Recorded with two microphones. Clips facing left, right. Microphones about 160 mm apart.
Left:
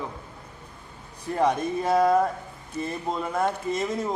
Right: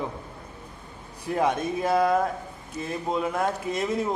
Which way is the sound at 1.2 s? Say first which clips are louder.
Left 1 dB; 5° right (ahead or behind).